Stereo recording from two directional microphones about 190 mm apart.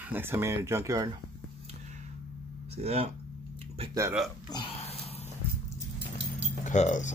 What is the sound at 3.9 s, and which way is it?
Speech, 15° right (ahead or behind).